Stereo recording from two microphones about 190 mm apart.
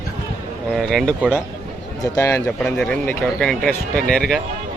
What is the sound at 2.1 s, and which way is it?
Speech, 15° left (ahead or behind).